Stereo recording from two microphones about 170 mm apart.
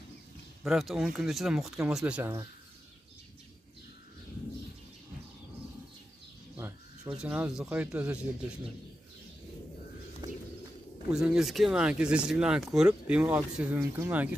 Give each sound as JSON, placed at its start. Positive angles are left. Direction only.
{"t": 0.7, "sound": "speech", "side_deg": 0}
{"t": 7.2, "sound": "speech", "side_deg": -5}
{"t": 10.2, "sound": "bird", "side_deg": -25}
{"t": 11.1, "sound": "speech", "side_deg": -5}